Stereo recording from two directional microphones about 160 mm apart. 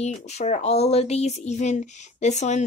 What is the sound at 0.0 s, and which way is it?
Speech, 45° left (ahead or behind).